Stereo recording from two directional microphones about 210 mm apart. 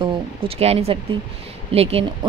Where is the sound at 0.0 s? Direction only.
25° right (ahead or behind).